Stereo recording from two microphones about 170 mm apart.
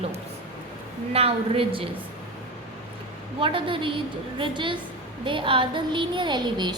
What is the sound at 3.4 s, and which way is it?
A woman's voice, 30° right (ahead or behind).